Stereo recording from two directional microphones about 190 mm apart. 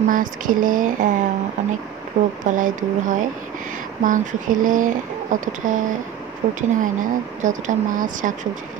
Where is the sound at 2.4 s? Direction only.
40° right (ahead or behind).